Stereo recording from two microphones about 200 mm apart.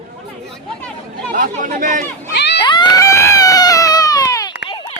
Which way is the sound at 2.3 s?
60° left (ahead or behind).